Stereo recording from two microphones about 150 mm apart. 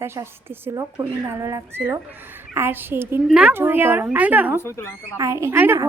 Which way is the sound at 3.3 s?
5° right (ahead or behind).